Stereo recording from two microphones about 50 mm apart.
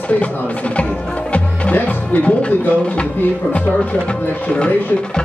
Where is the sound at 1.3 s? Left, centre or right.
Left.